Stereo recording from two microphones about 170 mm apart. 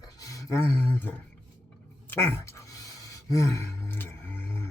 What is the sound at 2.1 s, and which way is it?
Sigh, 15° left (ahead or behind).